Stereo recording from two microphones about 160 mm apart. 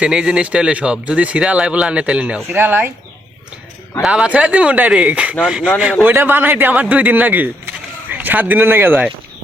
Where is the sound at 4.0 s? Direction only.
5° right (ahead or behind).